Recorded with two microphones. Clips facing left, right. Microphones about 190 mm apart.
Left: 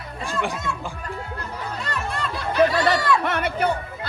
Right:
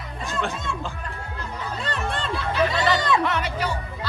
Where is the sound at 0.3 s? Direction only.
15° left (ahead or behind).